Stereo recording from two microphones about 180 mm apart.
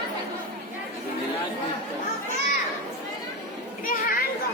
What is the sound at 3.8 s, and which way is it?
Children playing, 50° left (ahead or behind).